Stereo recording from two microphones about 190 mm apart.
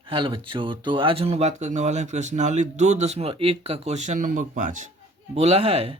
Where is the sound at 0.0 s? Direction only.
25° right (ahead or behind).